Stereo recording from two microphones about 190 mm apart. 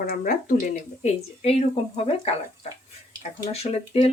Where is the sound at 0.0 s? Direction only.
45° left (ahead or behind); by 2.3 s 30° left (ahead or behind).